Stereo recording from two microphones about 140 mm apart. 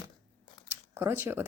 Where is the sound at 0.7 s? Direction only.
15° right (ahead or behind).